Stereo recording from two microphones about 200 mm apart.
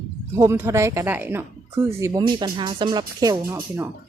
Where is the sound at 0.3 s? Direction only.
10° right (ahead or behind).